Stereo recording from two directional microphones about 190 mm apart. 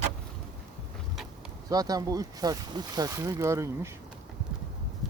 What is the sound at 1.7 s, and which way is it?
Speech, 20° right (ahead or behind).